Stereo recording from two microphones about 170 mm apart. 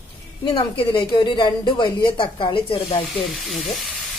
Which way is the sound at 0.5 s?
25° left (ahead or behind).